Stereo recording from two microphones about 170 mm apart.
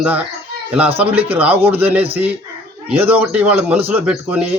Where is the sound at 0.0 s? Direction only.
10° right (ahead or behind).